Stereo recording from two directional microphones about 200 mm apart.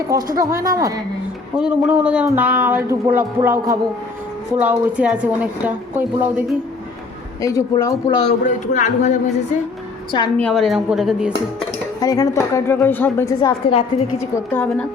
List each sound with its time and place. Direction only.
0.3 s speech: 15° right (ahead or behind)
1.5 s speech: 5° right (ahead or behind)
7.4 s speech: 15° left (ahead or behind)
8.4 s speech: 40° left (ahead or behind)
10.3 s speech: 5° left (ahead or behind)
11.9 s a woman's voice: 20° left (ahead or behind)
13.4 s speech: 25° left (ahead or behind)
14.2 s a woman's voice: 10° left (ahead or behind)